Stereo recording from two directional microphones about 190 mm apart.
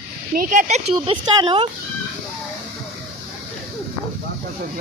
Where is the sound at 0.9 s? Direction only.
25° right (ahead or behind).